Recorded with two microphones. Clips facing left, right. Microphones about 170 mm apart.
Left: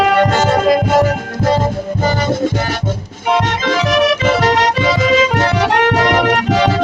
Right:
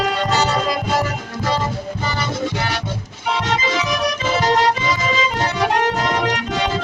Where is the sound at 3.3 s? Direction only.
65° left (ahead or behind).